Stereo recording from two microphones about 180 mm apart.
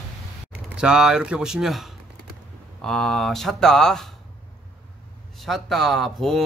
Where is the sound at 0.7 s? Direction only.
5° right (ahead or behind).